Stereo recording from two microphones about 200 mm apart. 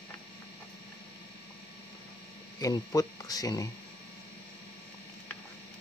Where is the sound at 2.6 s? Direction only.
20° left (ahead or behind).